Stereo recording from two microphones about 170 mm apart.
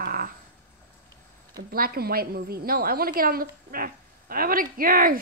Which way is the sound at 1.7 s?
60° right (ahead or behind).